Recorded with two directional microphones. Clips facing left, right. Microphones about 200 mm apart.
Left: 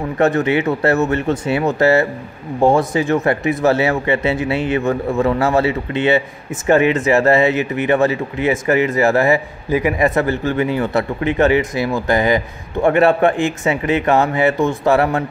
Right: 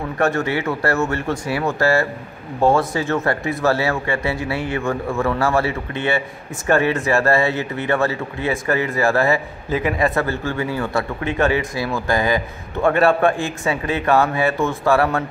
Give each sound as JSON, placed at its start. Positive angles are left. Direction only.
{"t": 0.2, "sound": "speech", "side_deg": 20}